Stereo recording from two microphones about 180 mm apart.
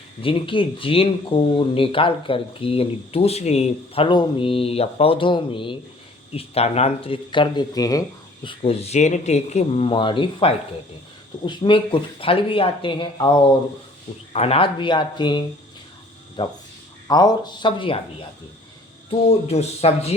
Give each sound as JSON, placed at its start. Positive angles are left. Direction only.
{"t": 0.2, "sound": "speech", "side_deg": 30}
{"t": 8.4, "sound": "speech", "side_deg": 35}
{"t": 19.5, "sound": "speech", "side_deg": 35}